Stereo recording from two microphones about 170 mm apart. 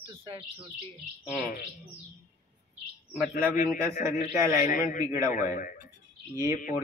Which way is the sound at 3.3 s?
55° left (ahead or behind).